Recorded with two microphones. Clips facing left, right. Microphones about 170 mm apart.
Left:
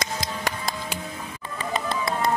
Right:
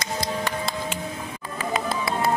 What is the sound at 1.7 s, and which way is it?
Music, 5° right (ahead or behind).